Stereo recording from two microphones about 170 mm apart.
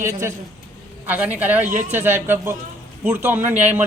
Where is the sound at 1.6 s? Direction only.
50° right (ahead or behind).